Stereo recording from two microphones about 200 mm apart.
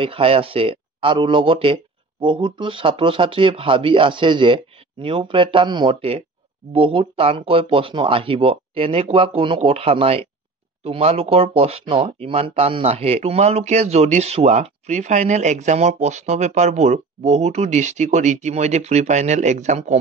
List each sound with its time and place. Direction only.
0.0 s speech: 25° right (ahead or behind)